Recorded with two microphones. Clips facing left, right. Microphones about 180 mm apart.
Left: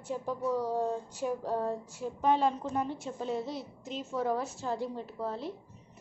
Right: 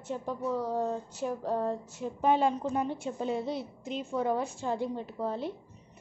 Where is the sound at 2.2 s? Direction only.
Centre (ahead or behind).